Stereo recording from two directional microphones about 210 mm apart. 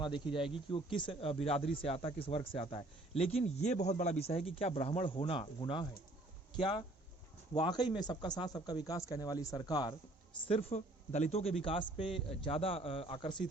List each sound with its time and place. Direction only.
0.0 s a man's voice: 25° left (ahead or behind)